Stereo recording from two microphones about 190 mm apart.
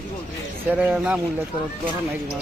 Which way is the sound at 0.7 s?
5° right (ahead or behind).